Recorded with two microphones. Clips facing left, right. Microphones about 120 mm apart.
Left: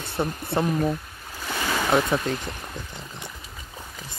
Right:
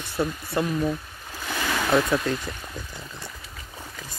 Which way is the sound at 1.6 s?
10° left (ahead or behind).